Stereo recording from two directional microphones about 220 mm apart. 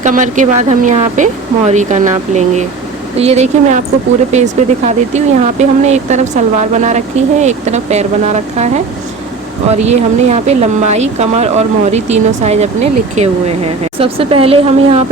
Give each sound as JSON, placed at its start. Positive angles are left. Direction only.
{"t": 0.0, "sound": "speech", "side_deg": -35}